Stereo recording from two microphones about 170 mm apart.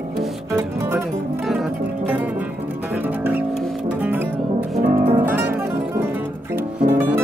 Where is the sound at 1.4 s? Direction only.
Centre (ahead or behind).